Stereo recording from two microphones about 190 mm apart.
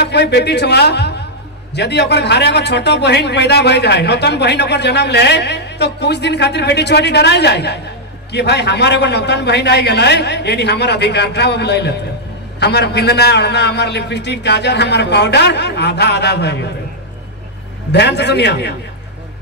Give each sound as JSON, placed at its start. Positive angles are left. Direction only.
{"t": 0.0, "sound": "a man's voice", "side_deg": 60}
{"t": 17.9, "sound": "a man's voice", "side_deg": 60}